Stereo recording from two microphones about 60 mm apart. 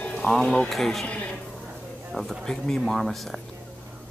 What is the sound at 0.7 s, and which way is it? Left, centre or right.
Speech, centre.